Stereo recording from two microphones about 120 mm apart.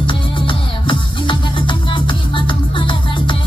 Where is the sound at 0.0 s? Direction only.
45° left (ahead or behind).